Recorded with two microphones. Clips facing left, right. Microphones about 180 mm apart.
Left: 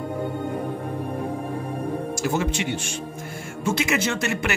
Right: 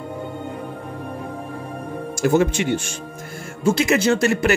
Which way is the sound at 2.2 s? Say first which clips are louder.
Right 9 dB; 50° right (ahead or behind).